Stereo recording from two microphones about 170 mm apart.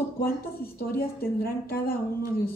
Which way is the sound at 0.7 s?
60° left (ahead or behind).